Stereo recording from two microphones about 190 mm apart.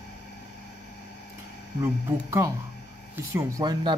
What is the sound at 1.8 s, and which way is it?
Speech, 15° right (ahead or behind).